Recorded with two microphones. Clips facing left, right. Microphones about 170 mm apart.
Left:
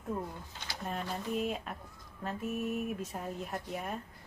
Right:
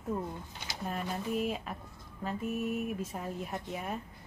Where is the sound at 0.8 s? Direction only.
Centre (ahead or behind).